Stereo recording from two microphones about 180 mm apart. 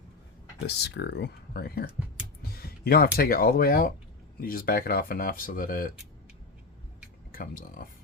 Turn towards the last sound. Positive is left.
turn(degrees=50)  # may be behind; listen again after turning